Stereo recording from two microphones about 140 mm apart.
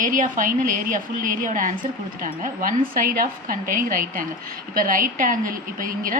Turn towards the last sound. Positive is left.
turn(degrees=-75)  # may be behind; listen again after turning